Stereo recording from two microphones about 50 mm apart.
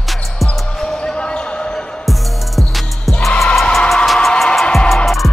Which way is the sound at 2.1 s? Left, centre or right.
Centre.